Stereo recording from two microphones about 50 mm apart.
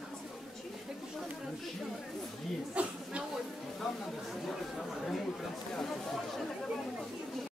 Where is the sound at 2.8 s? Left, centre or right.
Right.